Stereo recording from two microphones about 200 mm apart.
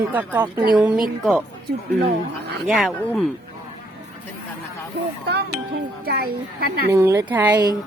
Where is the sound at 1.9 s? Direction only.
55° right (ahead or behind).